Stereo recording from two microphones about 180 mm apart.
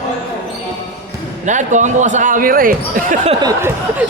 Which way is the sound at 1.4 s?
45° right (ahead or behind).